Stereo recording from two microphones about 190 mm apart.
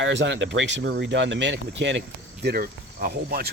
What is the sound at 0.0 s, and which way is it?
Speech, 70° right (ahead or behind).